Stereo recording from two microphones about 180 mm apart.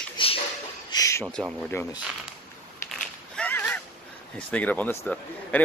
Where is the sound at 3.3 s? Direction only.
10° left (ahead or behind).